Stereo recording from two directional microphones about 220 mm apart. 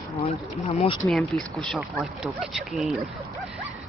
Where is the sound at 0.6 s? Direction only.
25° left (ahead or behind).